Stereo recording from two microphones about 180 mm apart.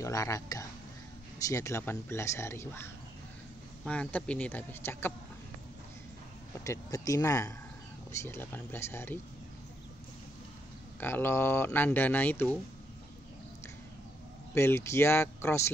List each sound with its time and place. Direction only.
0.0 s speech: 15° left (ahead or behind)
6.6 s speech: 20° left (ahead or behind)
11.0 s speech: 10° left (ahead or behind)
14.5 s speech: 15° left (ahead or behind)